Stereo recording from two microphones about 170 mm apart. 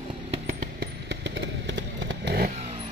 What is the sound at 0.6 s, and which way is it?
Motorcycle, 80° right.